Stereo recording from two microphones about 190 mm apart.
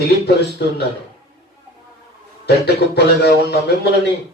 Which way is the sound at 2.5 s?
60° left (ahead or behind).